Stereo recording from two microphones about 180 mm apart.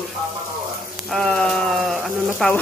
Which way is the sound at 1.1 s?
5° left (ahead or behind).